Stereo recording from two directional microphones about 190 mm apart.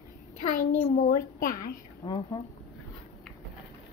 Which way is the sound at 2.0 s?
15° left (ahead or behind).